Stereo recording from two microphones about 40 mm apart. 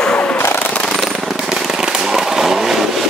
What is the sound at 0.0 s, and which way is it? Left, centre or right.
Machine gun, left.